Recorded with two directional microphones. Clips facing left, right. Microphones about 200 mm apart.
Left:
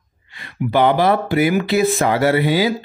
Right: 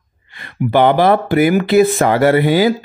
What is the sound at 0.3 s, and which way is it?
Speech, 55° right (ahead or behind).